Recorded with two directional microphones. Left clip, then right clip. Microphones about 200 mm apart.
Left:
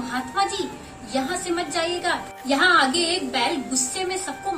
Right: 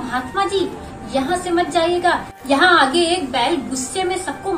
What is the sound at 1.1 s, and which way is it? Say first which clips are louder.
A woman's voice: right 7 dB; 15° left (ahead or behind).